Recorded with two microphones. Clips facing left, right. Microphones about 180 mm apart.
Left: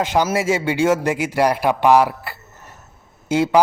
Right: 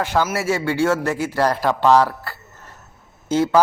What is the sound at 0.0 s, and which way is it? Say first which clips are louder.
A man's voice: left 2 dB; 20° left (ahead or behind).